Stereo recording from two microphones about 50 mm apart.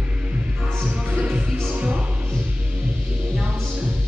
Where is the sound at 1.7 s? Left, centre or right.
Right.